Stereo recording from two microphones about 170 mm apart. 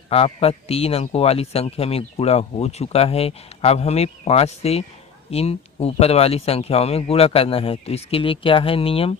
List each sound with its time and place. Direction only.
0.1 s a man's voice: 35° left (ahead or behind)